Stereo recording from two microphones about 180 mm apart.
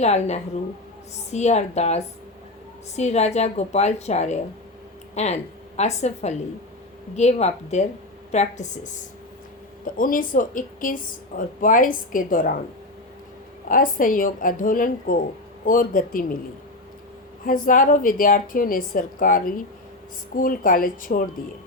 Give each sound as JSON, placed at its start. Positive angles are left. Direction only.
{"t": 0.0, "sound": "a woman's voice", "side_deg": 40}
{"t": 13.7, "sound": "a woman's voice", "side_deg": 50}
{"t": 17.4, "sound": "a woman's voice", "side_deg": 50}